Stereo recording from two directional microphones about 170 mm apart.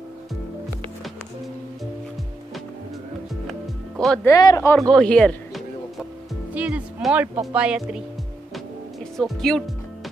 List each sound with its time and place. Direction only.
4.0 s speech: 5° left (ahead or behind)
4.3 s speech: 20° left (ahead or behind)
4.7 s speech: 5° left (ahead or behind)
6.5 s speech: 10° right (ahead or behind)
9.1 s speech: centre (ahead or behind)